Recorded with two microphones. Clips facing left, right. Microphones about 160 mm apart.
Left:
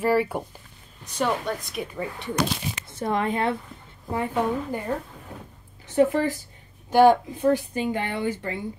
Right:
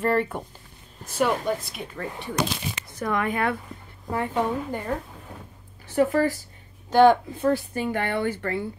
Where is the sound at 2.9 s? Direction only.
30° left (ahead or behind).